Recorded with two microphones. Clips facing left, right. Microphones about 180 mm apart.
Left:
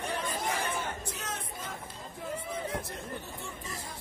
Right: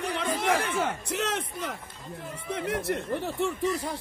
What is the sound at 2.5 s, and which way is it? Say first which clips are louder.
Speech: right 7 dB; 80° right.